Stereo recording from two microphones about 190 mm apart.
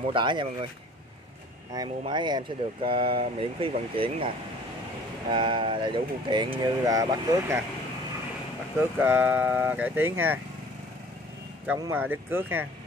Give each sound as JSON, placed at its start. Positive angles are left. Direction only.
{"t": 0.0, "sound": "speech", "side_deg": -25}
{"t": 1.7, "sound": "speech", "side_deg": -20}
{"t": 5.3, "sound": "speech", "side_deg": -25}
{"t": 8.9, "sound": "speech", "side_deg": -10}
{"t": 11.8, "sound": "speech", "side_deg": -10}